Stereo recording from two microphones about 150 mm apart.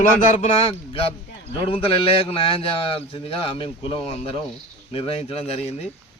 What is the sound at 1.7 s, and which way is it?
A man's voice, 35° left (ahead or behind).